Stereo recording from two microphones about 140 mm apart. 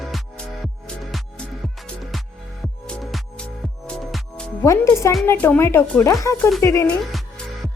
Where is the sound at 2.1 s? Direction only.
Centre (ahead or behind).